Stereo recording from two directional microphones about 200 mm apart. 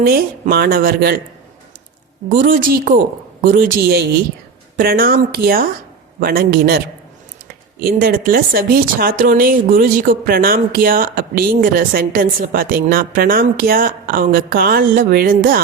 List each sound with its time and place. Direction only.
0.0 s speech: 50° right (ahead or behind)
2.4 s speech: 45° right (ahead or behind)